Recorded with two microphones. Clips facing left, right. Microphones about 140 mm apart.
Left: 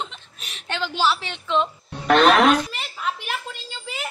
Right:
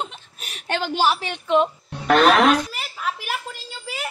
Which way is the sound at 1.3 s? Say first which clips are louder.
Right 4 dB; 50° right (ahead or behind).